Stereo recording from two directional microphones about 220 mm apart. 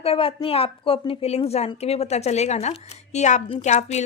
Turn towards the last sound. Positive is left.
turn(degrees=30)  # may be behind; listen again after turning